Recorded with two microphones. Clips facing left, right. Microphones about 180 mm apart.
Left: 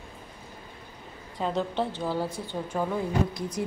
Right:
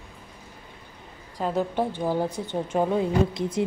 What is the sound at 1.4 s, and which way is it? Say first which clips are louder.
Speech: right 3 dB; 10° right (ahead or behind).